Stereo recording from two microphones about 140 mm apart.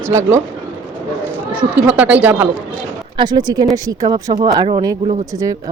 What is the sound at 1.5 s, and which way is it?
Speech, 10° right (ahead or behind).